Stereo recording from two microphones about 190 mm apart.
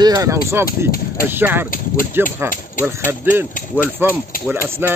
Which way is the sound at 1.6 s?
45° left (ahead or behind).